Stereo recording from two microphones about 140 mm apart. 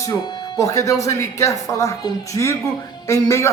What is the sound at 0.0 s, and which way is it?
Speech, 20° left (ahead or behind).